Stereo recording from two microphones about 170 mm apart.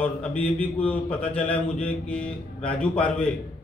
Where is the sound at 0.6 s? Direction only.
10° left (ahead or behind).